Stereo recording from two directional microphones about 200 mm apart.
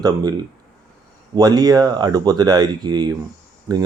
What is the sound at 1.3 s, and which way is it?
Speech, 20° right (ahead or behind).